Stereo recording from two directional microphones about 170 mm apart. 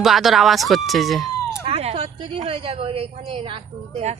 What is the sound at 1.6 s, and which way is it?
A woman's voice, 40° right (ahead or behind).